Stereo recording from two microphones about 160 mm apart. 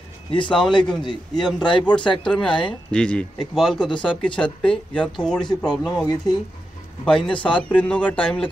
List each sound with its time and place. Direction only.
0.3 s a man's voice: 30° left (ahead or behind)
1.3 s speech: 5° left (ahead or behind)
7.1 s speech: 5° left (ahead or behind)